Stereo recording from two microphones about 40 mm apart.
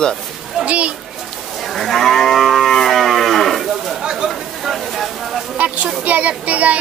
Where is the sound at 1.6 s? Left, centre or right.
Centre.